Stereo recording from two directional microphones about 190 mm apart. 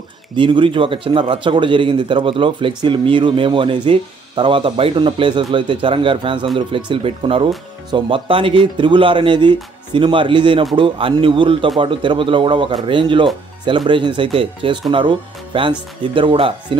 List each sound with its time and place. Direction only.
0.4 s speech: 25° right (ahead or behind)